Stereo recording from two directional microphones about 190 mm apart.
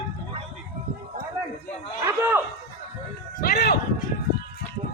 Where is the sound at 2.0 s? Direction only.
10° right (ahead or behind).